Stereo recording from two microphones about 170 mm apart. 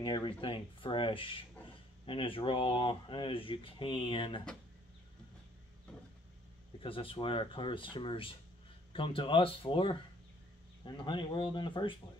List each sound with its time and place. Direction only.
0.0 s speech: 30° left (ahead or behind)
6.8 s speech: 30° left (ahead or behind)